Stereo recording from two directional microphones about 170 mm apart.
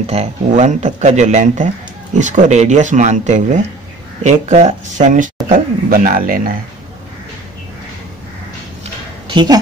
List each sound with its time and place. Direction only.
0.0 s speech: 40° right (ahead or behind); by 6.5 s 55° right (ahead or behind)
9.3 s a woman's voice: 25° right (ahead or behind)